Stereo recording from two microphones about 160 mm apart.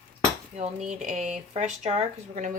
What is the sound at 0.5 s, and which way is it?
A woman's voice, 45° right (ahead or behind).